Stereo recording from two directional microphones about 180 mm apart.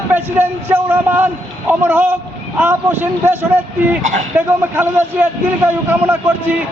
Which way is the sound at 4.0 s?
45° right (ahead or behind).